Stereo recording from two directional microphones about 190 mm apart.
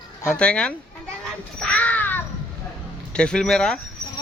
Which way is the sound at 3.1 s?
5° left (ahead or behind).